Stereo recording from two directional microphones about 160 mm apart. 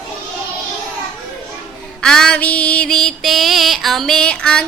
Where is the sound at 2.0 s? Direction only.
5° left (ahead or behind).